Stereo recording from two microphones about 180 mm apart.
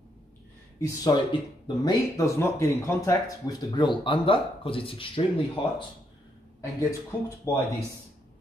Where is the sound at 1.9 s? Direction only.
15° left (ahead or behind).